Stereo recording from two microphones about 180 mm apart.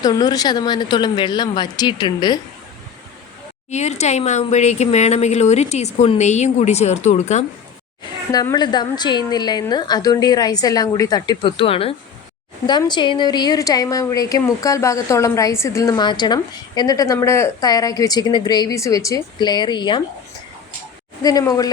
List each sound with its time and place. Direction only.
0.0 s a woman's voice: 20° left (ahead or behind)
3.7 s speech: 40° left (ahead or behind)
8.3 s a woman's voice: 20° left (ahead or behind)
21.2 s a woman's voice: 20° left (ahead or behind)